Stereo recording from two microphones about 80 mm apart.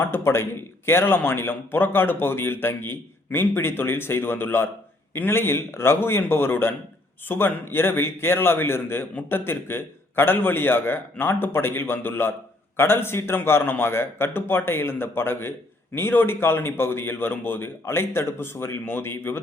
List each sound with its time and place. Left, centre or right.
0.0 s a man's voice: left